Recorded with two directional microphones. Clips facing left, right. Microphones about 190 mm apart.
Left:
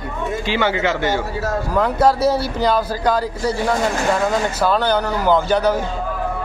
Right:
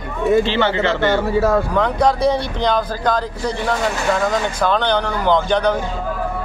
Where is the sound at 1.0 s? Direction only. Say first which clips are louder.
Right 5 dB; 60° right (ahead or behind).